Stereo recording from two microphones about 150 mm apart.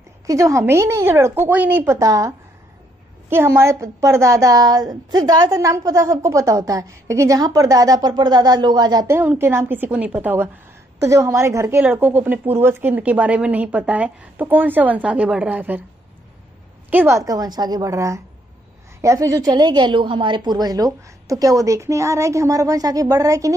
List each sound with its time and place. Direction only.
0.3 s a woman's voice: 20° right (ahead or behind)
9.1 s a woman's voice: 15° right (ahead or behind)
16.9 s a woman's voice: 15° right (ahead or behind)
17.2 s a woman's voice: 25° right (ahead or behind)